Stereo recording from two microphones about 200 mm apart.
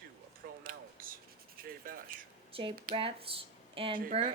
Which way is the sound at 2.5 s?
25° right (ahead or behind).